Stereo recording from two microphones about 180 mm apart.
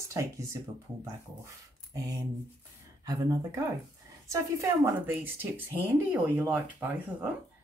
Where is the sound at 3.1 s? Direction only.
20° right (ahead or behind).